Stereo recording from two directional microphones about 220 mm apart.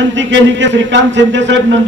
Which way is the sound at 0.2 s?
55° right (ahead or behind).